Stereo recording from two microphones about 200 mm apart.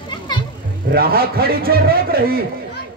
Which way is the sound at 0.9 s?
50° right (ahead or behind).